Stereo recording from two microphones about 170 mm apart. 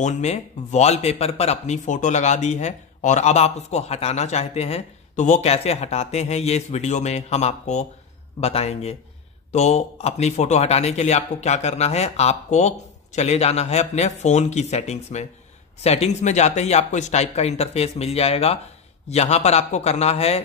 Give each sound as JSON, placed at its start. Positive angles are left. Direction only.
{"t": 0.0, "sound": "speech", "side_deg": 45}